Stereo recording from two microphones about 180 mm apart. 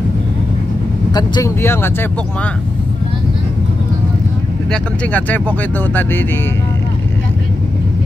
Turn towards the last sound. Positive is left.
turn(degrees=10)  # may be behind; listen again after turning